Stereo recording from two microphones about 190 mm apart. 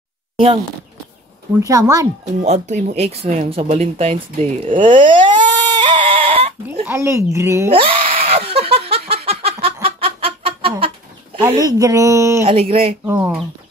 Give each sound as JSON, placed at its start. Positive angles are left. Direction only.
{"t": 1.6, "sound": "speech", "side_deg": -20}
{"t": 2.4, "sound": "speech", "side_deg": -35}
{"t": 4.8, "sound": "goat", "side_deg": -25}
{"t": 6.9, "sound": "speech", "side_deg": -15}
{"t": 7.7, "sound": "giggle", "side_deg": -30}
{"t": 11.4, "sound": "speech", "side_deg": -20}
{"t": 12.4, "sound": "speech", "side_deg": -30}
{"t": 13.0, "sound": "speech", "side_deg": -10}